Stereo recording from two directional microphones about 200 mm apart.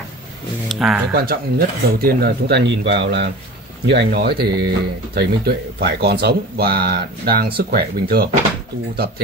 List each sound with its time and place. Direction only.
0.7 s speech: centre (ahead or behind)
1.1 s speech: 50° right (ahead or behind)